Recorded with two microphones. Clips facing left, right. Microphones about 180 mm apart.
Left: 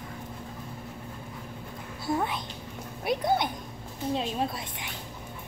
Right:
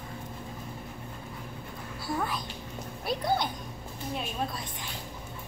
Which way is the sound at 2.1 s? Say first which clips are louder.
Left 3 dB; 20° left (ahead or behind).